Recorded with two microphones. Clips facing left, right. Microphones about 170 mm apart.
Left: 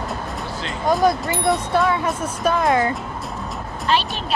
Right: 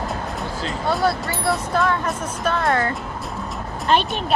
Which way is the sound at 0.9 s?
20° left (ahead or behind).